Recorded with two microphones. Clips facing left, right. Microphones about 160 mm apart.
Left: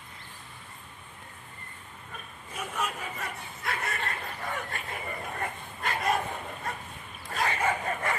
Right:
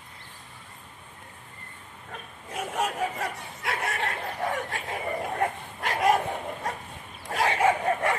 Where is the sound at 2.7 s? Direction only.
75° right (ahead or behind).